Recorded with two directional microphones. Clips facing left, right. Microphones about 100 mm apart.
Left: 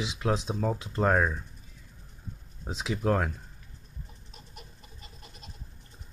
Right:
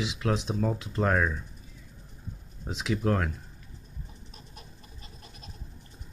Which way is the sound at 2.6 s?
20° left (ahead or behind).